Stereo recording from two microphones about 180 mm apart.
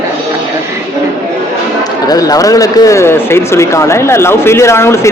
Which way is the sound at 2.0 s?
20° left (ahead or behind).